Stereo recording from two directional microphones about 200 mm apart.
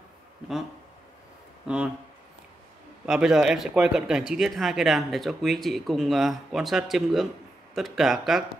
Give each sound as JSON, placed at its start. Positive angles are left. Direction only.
{"t": 1.7, "sound": "speech", "side_deg": -5}
{"t": 3.1, "sound": "speech", "side_deg": -5}